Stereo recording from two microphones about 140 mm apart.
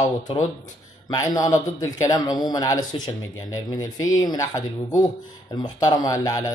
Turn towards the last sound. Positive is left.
turn(degrees=25)  # may be behind; listen again after turning